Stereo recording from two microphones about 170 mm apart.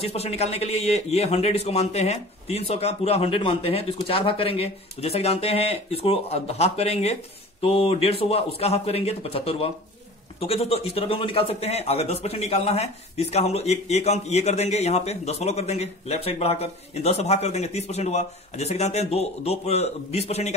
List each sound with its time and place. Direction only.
0.0 s a man's voice: 35° left (ahead or behind)